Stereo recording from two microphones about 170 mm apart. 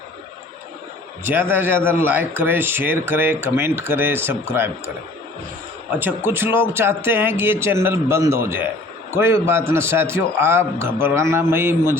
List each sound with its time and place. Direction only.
1.2 s speech: 10° right (ahead or behind)
5.9 s speech: 10° right (ahead or behind)